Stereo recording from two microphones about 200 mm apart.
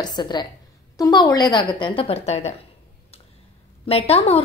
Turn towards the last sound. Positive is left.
turn(degrees=30)  # may be behind; listen again after turning